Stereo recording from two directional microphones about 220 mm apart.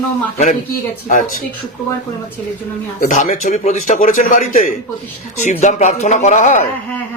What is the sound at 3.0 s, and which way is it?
Speech, 35° left (ahead or behind).